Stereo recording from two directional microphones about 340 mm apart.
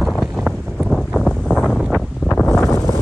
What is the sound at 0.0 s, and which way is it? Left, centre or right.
Wind, centre.